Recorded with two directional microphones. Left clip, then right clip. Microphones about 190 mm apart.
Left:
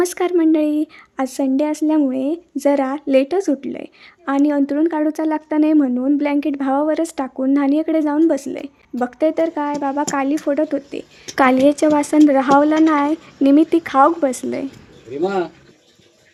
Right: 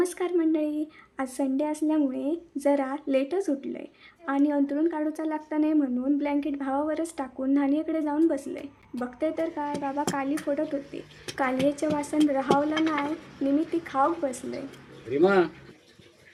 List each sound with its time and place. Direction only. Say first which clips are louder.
0.0 s speech: left 9 dB; 50° left (ahead or behind)